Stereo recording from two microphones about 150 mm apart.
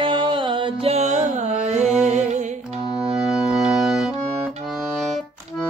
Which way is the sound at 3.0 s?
5° right (ahead or behind).